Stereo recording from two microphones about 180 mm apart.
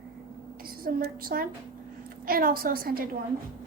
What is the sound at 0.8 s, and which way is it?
A woman's voice, 55° right (ahead or behind).